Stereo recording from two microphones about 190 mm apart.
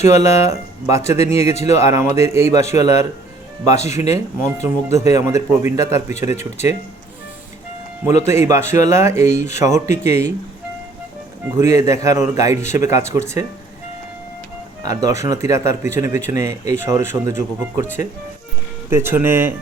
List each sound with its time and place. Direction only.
0.0 s speech: 15° right (ahead or behind)
8.2 s speech: 15° right (ahead or behind)
11.4 s speech: 15° right (ahead or behind)
14.8 s speech: 15° right (ahead or behind)
18.9 s speech: 10° right (ahead or behind)